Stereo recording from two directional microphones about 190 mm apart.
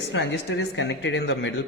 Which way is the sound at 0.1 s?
70° left (ahead or behind).